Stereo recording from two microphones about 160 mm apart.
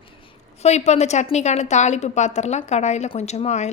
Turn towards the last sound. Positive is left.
turn(degrees=45)  # may be behind; listen again after turning